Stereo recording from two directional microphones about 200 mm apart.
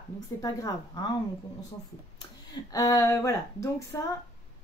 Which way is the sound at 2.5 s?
20° left (ahead or behind).